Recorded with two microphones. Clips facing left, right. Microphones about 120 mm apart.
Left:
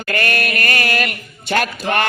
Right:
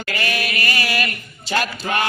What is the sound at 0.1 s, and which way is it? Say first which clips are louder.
A man's voice: left 5 dB; 50° left (ahead or behind).